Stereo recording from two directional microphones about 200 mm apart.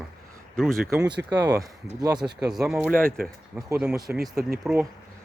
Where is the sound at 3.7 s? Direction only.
15° right (ahead or behind).